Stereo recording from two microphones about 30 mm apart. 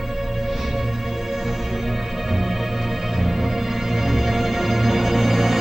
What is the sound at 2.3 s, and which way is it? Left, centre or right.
Music, centre.